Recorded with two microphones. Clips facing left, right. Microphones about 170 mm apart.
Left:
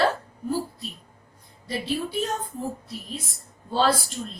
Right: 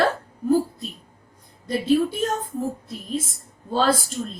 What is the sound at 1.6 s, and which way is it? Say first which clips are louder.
Speech: right 8 dB; 50° right (ahead or behind).